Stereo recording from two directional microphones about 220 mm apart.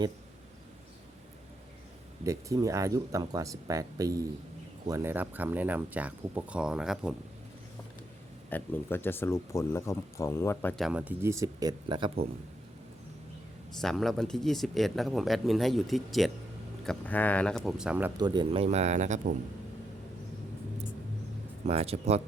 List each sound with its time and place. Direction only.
2.2 s speech: 15° right (ahead or behind)
8.4 s speech: 10° left (ahead or behind); by 12.2 s 20° right (ahead or behind)
13.8 s speech: centre (ahead or behind)
18.2 s speech: 20° right (ahead or behind)
21.7 s speech: 30° right (ahead or behind)